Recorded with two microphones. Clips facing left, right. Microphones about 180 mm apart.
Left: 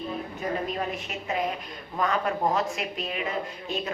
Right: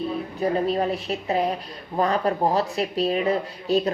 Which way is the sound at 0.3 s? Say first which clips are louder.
Right 8 dB; 35° right (ahead or behind).